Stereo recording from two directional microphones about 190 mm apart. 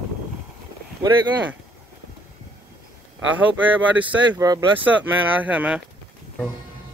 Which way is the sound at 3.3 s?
10° right (ahead or behind).